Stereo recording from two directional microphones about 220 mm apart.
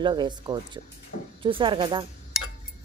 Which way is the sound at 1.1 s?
45° left (ahead or behind).